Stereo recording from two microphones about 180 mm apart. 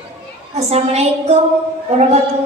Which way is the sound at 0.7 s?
35° right (ahead or behind).